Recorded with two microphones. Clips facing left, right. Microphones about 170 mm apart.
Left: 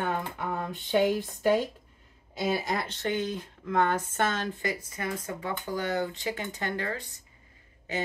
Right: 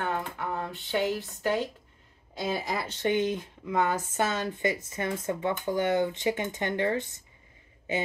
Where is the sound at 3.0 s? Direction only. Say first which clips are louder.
Right 8 dB; 20° right (ahead or behind).